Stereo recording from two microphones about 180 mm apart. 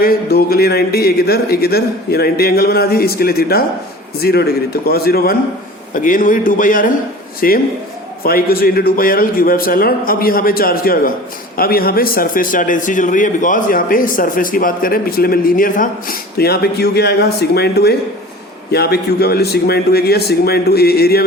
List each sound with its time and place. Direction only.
0.0 s speech: 55° left (ahead or behind)
5.9 s a man's voice: 50° left (ahead or behind)